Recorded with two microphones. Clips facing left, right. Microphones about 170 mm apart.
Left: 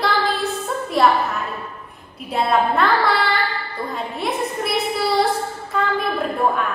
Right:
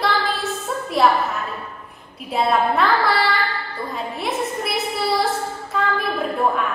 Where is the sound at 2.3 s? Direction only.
Centre (ahead or behind).